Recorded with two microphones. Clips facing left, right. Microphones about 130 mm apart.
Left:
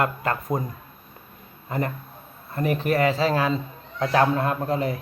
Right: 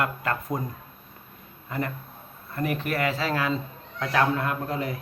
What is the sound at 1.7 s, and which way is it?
A man's voice, 40° left (ahead or behind).